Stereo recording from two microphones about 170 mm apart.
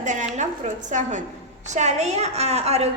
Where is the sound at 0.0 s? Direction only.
45° right (ahead or behind).